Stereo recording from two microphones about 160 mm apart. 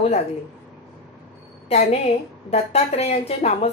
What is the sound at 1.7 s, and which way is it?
A woman's voice, 40° left (ahead or behind).